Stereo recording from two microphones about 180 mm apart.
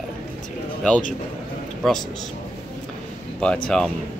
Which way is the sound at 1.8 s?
Centre (ahead or behind).